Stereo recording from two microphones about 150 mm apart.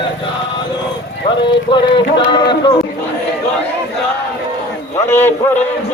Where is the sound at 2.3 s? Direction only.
30° left (ahead or behind).